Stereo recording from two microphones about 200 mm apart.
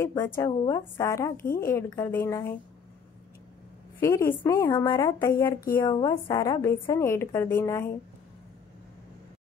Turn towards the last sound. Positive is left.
turn(degrees=15)  # may be behind; listen again after turning